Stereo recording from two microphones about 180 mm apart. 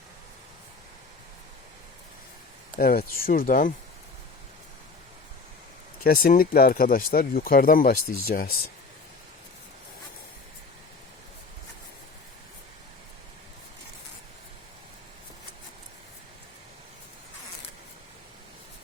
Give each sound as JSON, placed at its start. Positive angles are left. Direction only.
{"t": 2.7, "sound": "speech", "side_deg": 55}
{"t": 6.0, "sound": "speech", "side_deg": 55}